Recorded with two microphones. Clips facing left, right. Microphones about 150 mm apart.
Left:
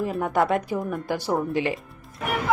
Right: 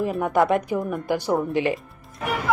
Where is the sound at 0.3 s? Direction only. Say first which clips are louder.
Right 3 dB; 20° right (ahead or behind).